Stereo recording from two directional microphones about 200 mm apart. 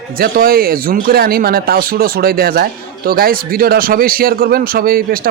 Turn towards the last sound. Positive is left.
turn(degrees=-45)  # may be behind; listen again after turning